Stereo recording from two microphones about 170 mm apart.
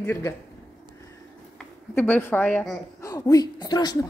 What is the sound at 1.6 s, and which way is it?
A woman's voice, 10° left (ahead or behind).